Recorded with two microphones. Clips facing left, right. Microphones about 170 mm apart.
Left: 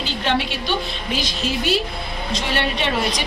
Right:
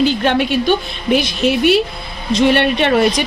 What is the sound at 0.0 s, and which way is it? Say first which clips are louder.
A woman's voice: right 8 dB; 55° right (ahead or behind).